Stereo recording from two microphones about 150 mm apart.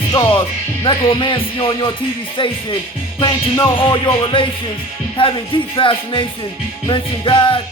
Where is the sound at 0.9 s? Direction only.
35° left (ahead or behind).